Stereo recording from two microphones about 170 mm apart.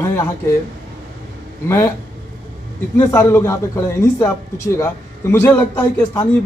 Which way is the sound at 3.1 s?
15° left (ahead or behind).